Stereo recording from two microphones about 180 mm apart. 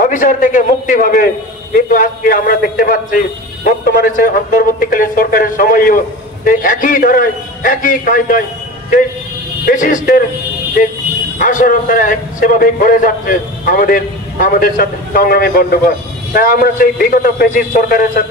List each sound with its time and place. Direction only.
0.0 s a man's voice: 45° left (ahead or behind)
9.7 s a man's voice: 45° left (ahead or behind)
11.3 s a man's voice: 50° left (ahead or behind)